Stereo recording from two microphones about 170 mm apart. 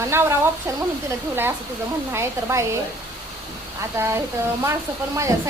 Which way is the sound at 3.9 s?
15° right (ahead or behind).